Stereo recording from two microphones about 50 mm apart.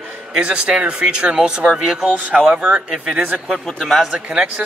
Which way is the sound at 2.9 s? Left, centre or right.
Centre.